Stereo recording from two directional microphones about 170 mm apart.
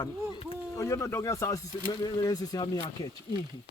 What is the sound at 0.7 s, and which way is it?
Speech, 20° left (ahead or behind).